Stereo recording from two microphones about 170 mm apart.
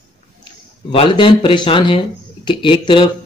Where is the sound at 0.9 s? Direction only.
30° left (ahead or behind).